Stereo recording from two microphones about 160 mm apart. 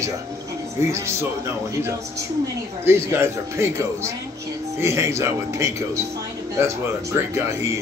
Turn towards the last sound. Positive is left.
turn(degrees=-15)  # may be behind; listen again after turning